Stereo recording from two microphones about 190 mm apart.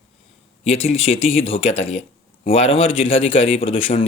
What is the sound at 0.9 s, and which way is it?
A man's voice, 30° left (ahead or behind).